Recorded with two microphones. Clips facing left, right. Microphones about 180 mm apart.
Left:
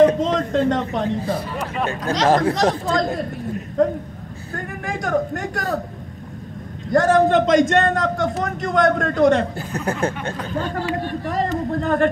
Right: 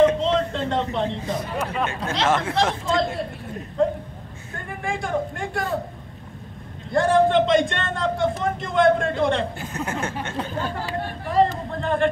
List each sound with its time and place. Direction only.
0.0 s a sound: 45° left (ahead or behind)
0.9 s a man's voice: 35° left (ahead or behind)
4.6 s a man's voice: 45° left (ahead or behind)
6.9 s a man's voice: 45° left (ahead or behind)
11.2 s a man's voice: 45° left (ahead or behind)